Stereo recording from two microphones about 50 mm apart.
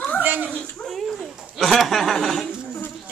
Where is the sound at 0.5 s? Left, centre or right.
Left.